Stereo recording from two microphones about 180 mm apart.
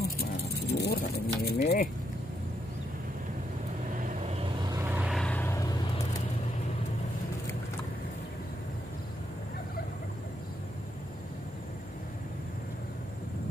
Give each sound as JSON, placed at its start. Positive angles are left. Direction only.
{"t": 0.0, "sound": "vehicle", "side_deg": 65}
{"t": 4.0, "sound": "vehicle", "side_deg": -45}
{"t": 4.6, "sound": "vehicle", "side_deg": -15}